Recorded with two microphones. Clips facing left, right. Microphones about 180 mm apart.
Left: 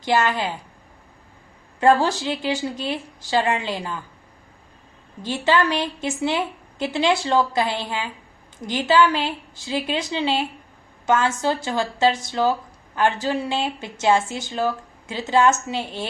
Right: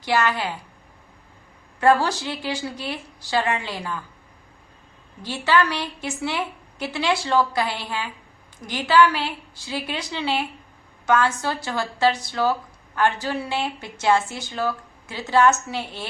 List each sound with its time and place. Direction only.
0.0 s a woman's voice: 20° left (ahead or behind)
1.8 s a woman's voice: 15° left (ahead or behind)
5.2 s a woman's voice: 20° left (ahead or behind)